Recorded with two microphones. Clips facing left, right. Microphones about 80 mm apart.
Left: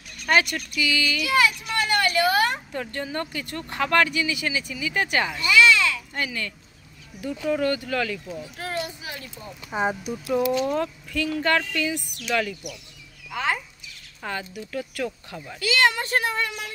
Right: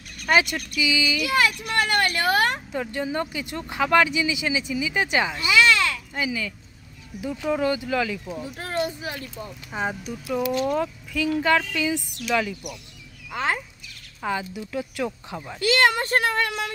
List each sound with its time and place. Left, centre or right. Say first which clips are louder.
0.2 s a sound: right 1 dB; centre
0.6 s speech: right 1 dB; centre
1.2 s a child's voice: left 2 dB; right
2.7 s speech: right 3 dB; centre
5.7 s a sound: left 1 dB; right
6.1 s speech: right 2 dB; centre
8.4 s a sound: right 6 dB; right
9.7 s speech: left 4 dB; centre
10.5 s speech: even; centre
13.3 s speech: even; right
14.2 s speech: right 4 dB; centre
15.6 s a child's voice: right 2 dB; right